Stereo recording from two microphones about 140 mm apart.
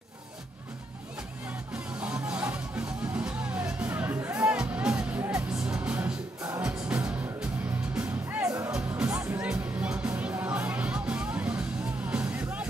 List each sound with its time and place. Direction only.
2.0 s music: 5° right (ahead or behind)
8.4 s music: 20° right (ahead or behind)
9.4 s music: 10° right (ahead or behind)